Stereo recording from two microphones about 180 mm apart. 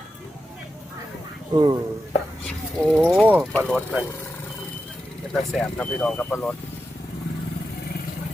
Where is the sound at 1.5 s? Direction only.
20° right (ahead or behind).